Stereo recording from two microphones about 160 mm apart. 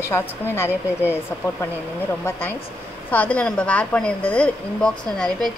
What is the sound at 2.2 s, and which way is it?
A woman's voice, 10° left (ahead or behind).